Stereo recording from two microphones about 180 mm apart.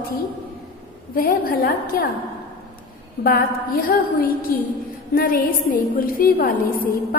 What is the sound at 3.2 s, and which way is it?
A woman's voice, 55° left (ahead or behind).